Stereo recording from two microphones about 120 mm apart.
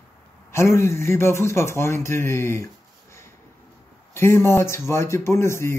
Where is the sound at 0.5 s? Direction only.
20° left (ahead or behind).